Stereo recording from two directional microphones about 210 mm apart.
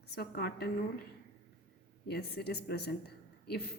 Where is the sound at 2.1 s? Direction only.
50° left (ahead or behind).